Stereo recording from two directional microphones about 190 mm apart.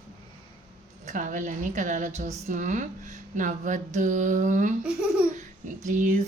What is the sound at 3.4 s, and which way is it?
Speech, 40° right (ahead or behind).